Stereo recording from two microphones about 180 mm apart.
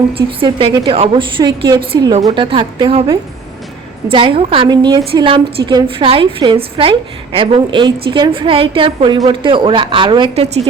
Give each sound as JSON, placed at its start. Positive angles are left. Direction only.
{"t": 0.1, "sound": "a woman's voice", "side_deg": -30}